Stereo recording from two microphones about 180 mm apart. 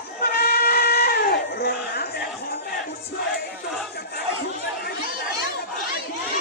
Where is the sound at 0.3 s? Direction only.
60° left (ahead or behind).